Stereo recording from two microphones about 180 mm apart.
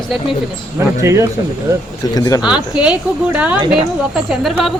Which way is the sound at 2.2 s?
20° left (ahead or behind).